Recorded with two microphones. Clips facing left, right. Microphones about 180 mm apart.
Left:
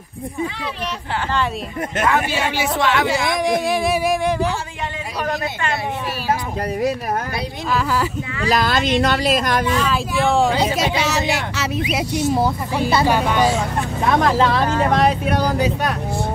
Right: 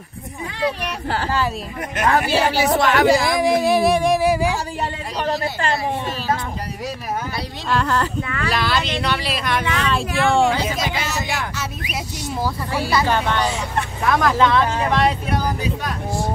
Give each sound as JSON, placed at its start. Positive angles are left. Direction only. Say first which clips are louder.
{"t": 2.0, "sound": "a woman's voice", "louder": "right 3 dB", "side_deg": -35}
{"t": 3.3, "sound": "music", "louder": "right 2 dB", "side_deg": 0}
{"t": 4.2, "sound": "speech", "louder": "right 2 dB", "side_deg": -10}
{"t": 5.2, "sound": "speech", "louder": "right 2 dB", "side_deg": -30}
{"t": 7.7, "sound": "speech", "louder": "even", "side_deg": 5}
{"t": 8.5, "sound": "speech", "louder": "left 5 dB", "side_deg": 45}
{"t": 9.8, "sound": "music", "louder": "even", "side_deg": 0}
{"t": 11.0, "sound": "speech", "louder": "left 5 dB", "side_deg": 90}
{"t": 12.4, "sound": "speech", "louder": "left 4 dB", "side_deg": 20}
{"t": 14.0, "sound": "speech", "louder": "left 1 dB", "side_deg": 25}
{"t": 14.9, "sound": "speech", "louder": "left 2 dB", "side_deg": 45}
{"t": 15.6, "sound": "speech", "louder": "left 5 dB", "side_deg": 70}